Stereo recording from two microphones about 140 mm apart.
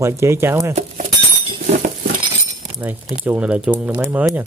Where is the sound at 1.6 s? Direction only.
75° right (ahead or behind).